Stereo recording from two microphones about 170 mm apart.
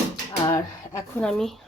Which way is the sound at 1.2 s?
5° left (ahead or behind).